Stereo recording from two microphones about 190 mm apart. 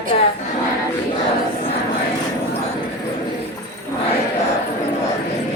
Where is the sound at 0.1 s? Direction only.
30° left (ahead or behind).